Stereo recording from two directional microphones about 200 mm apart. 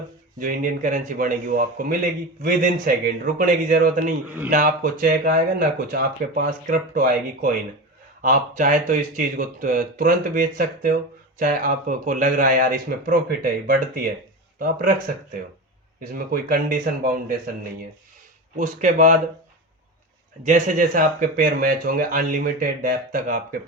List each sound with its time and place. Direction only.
0.3 s speech: 40° right (ahead or behind)
18.5 s speech: 40° right (ahead or behind)
20.4 s speech: 40° right (ahead or behind)